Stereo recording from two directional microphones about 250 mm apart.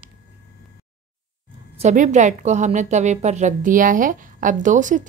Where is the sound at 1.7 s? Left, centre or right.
Right.